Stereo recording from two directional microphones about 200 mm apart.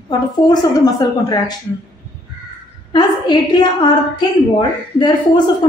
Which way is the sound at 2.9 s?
20° left (ahead or behind).